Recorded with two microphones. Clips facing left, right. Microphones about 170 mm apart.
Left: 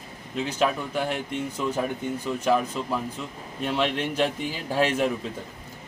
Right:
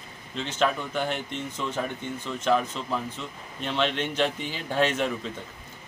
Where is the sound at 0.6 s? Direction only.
5° left (ahead or behind).